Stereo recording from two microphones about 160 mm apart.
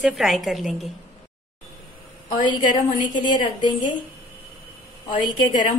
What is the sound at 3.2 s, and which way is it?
Speech, 30° left (ahead or behind).